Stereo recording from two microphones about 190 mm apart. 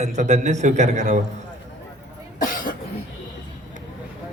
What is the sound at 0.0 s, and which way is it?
A man's voice, 35° right (ahead or behind).